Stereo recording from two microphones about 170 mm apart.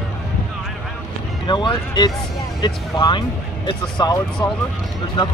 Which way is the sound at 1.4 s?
30° left (ahead or behind).